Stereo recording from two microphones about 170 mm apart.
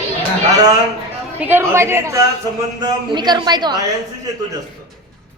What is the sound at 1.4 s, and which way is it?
A man's voice, 10° right (ahead or behind).